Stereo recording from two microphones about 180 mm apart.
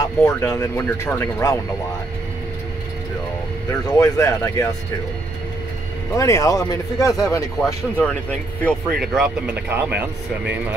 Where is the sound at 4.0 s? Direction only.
15° left (ahead or behind).